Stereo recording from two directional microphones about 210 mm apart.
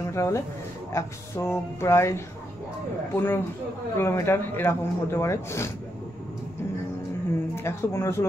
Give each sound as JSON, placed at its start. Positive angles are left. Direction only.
{"t": 0.0, "sound": "a sound", "side_deg": 15}
{"t": 0.9, "sound": "speech", "side_deg": 15}
{"t": 7.5, "sound": "speech", "side_deg": 10}